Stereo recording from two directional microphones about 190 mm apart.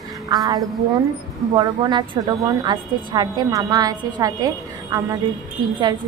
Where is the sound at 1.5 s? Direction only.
25° right (ahead or behind).